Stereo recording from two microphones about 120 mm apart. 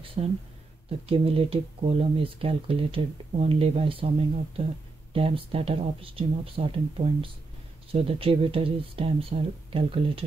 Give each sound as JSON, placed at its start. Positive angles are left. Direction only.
{"t": 0.0, "sound": "speech", "side_deg": -50}
{"t": 5.1, "sound": "speech", "side_deg": -50}